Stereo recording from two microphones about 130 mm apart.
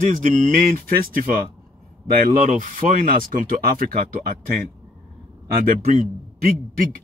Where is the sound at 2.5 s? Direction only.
85° right.